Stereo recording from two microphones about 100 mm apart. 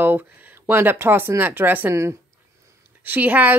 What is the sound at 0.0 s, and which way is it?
A woman's voice, 20° right (ahead or behind).